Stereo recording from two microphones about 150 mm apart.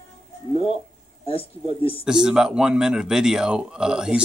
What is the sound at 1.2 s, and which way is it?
Speech, 40° left (ahead or behind).